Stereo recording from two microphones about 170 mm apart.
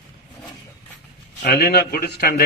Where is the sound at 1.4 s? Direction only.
70° left (ahead or behind).